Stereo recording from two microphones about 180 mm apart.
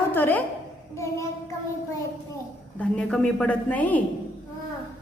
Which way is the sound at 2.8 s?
5° left (ahead or behind).